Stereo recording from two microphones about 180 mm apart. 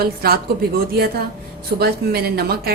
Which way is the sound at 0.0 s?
60° right (ahead or behind).